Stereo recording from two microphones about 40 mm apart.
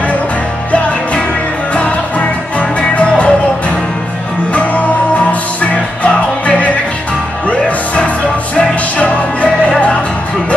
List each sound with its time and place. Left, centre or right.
0.7 s music: left
5.6 s music: left